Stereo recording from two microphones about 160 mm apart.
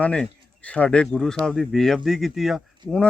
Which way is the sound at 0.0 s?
10° left (ahead or behind).